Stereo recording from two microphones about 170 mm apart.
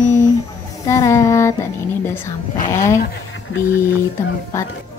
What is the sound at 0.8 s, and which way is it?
Speech, 20° left (ahead or behind).